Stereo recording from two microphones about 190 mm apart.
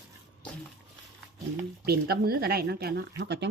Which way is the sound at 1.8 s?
55° right (ahead or behind).